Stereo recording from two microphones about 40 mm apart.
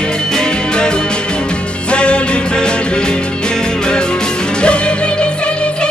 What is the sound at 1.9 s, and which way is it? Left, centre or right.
Music, left.